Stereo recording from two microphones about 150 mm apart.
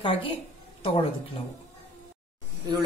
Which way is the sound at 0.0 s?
35° left (ahead or behind).